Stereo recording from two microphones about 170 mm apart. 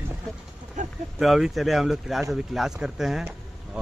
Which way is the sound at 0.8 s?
45° right (ahead or behind).